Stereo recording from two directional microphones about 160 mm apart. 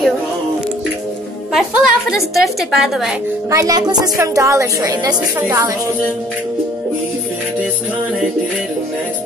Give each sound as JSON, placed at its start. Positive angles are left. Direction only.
{"t": 1.5, "sound": "a woman's voice", "side_deg": -5}
{"t": 3.4, "sound": "a woman's voice", "side_deg": -20}